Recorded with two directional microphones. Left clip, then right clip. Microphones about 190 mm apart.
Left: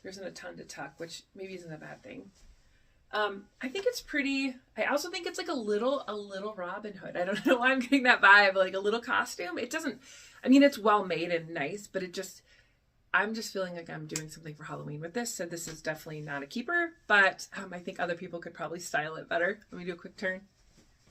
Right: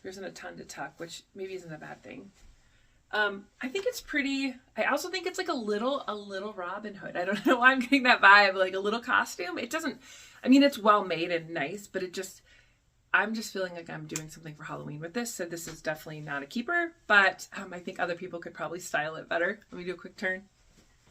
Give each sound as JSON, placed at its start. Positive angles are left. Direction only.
{"t": 0.0, "sound": "speech", "side_deg": -15}